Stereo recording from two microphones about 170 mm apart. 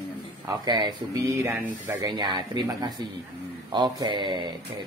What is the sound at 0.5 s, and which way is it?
Speech, 25° right (ahead or behind).